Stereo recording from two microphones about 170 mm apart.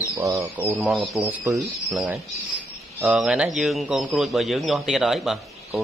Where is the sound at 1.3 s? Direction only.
15° right (ahead or behind).